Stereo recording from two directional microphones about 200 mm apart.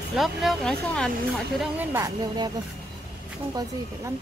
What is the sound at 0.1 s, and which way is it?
Speech, centre (ahead or behind).